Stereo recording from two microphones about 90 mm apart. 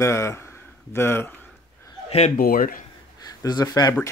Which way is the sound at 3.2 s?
45° left (ahead or behind).